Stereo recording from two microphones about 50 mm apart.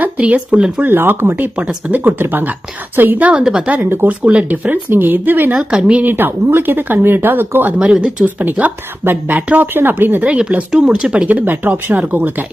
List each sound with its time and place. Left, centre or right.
0.0 s speech: right
0.9 s speech: right
1.5 s speech: right
2.3 s speech: right
3.2 s speech: right
3.8 s speech: right
4.2 s speech: right
4.4 s speech: right
5.5 s speech: centre
6.0 s speech: right
7.8 s speech: centre
8.2 s speech: right
10.8 s speech: right
11.3 s speech: right